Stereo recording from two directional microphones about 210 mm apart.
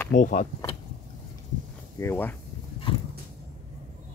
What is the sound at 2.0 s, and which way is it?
Speech, 10° left (ahead or behind).